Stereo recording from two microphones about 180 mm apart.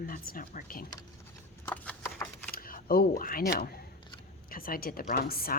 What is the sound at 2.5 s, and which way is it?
A woman's voice, 55° left (ahead or behind).